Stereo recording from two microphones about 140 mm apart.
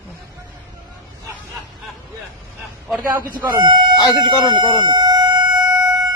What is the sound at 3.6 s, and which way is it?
Chicken, 35° right (ahead or behind).